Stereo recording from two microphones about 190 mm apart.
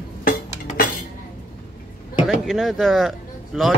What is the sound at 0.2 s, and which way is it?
Cutlery, 50° left (ahead or behind).